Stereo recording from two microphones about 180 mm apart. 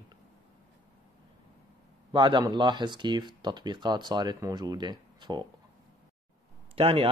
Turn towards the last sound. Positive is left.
turn(degrees=-30)  # may be behind; listen again after turning